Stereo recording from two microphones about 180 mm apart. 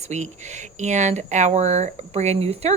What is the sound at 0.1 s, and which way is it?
A woman's voice, 40° right (ahead or behind).